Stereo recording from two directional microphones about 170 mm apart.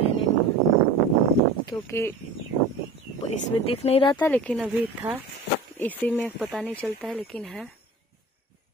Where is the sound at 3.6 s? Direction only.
35° left (ahead or behind).